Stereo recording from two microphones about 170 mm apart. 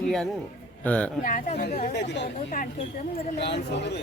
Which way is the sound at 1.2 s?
55° left (ahead or behind).